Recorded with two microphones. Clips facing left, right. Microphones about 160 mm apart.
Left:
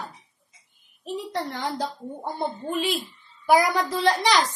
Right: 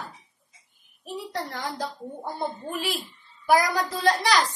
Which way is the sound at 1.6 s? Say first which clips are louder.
Left 3 dB; 20° left (ahead or behind).